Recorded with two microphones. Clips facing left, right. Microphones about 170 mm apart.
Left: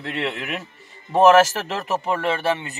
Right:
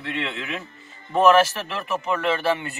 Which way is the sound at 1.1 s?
35° left (ahead or behind).